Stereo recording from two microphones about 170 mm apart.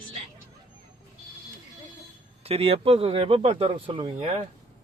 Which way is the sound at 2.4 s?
35° right (ahead or behind).